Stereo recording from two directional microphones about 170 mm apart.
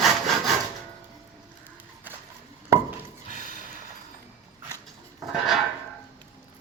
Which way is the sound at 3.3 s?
55° right (ahead or behind).